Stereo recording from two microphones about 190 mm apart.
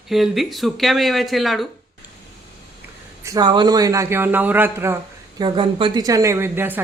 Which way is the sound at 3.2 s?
20° right (ahead or behind).